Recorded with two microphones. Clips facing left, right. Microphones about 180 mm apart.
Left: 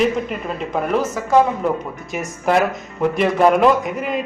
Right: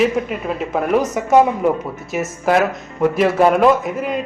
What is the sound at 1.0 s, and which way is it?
Speech, 20° right (ahead or behind).